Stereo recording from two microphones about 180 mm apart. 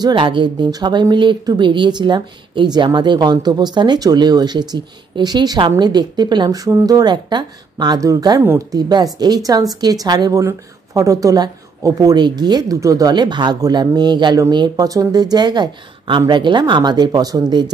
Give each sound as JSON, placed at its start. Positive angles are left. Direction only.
{"t": 0.0, "sound": "speech", "side_deg": -25}